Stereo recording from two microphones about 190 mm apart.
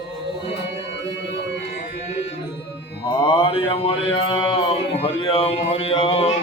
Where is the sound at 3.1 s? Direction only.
25° left (ahead or behind).